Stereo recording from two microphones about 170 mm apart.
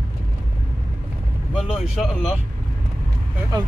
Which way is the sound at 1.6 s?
Centre (ahead or behind).